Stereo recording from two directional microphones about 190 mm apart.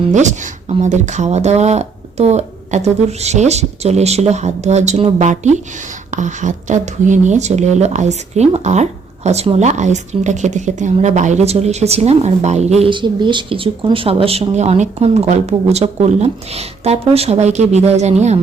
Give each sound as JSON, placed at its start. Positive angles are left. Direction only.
{"t": 0.1, "sound": "speech", "side_deg": -40}